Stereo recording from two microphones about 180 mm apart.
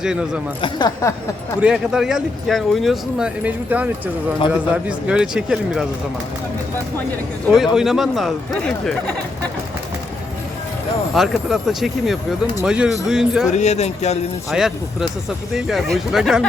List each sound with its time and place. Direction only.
0.0 s speech: 5° right (ahead or behind)
0.6 s speech: 20° left (ahead or behind)
1.6 s speech: 5° right (ahead or behind)
7.5 s speech: centre (ahead or behind)
11.1 s speech: centre (ahead or behind)
13.5 s speech: 40° left (ahead or behind)
14.5 s speech: 5° right (ahead or behind)